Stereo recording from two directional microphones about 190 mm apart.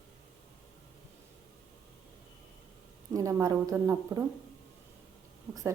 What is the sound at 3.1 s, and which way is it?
Speech, 15° right (ahead or behind).